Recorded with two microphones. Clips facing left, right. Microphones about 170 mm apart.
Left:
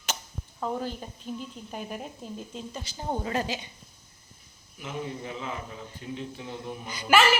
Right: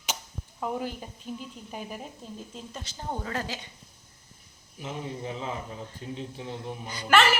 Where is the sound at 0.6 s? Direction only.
10° right (ahead or behind).